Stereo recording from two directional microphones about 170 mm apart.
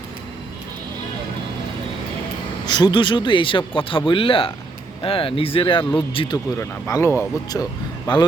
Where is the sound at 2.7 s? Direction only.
25° left (ahead or behind).